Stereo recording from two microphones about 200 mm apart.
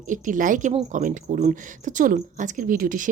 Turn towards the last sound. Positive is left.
turn(degrees=-45)  # may be behind; listen again after turning